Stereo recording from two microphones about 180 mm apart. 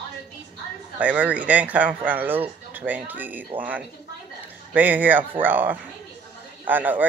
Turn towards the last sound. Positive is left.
turn(degrees=-10)  # may be behind; listen again after turning